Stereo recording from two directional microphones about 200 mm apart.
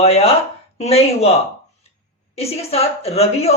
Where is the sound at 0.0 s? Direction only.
30° left (ahead or behind).